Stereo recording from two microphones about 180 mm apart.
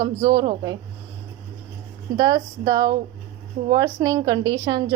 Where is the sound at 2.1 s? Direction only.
20° right (ahead or behind).